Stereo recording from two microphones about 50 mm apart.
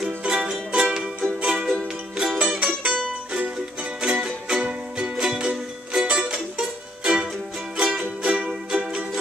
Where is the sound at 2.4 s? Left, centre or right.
Right.